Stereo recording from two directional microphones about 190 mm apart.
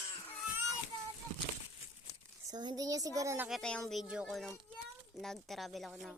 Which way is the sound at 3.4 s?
Centre (ahead or behind).